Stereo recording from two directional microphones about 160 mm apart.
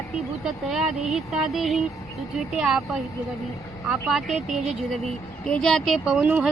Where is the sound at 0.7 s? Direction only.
5° right (ahead or behind).